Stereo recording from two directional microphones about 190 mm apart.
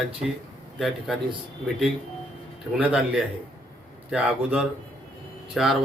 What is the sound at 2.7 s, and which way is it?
Speech, 5° right (ahead or behind).